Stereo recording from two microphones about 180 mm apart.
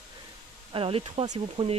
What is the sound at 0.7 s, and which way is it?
Speech, 30° right (ahead or behind).